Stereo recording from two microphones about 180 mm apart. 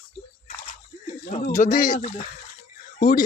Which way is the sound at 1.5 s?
50° left (ahead or behind).